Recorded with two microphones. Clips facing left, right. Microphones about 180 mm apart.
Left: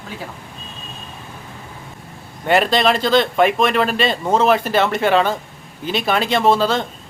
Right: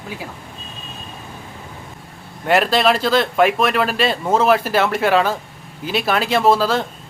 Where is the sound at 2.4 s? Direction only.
Centre (ahead or behind).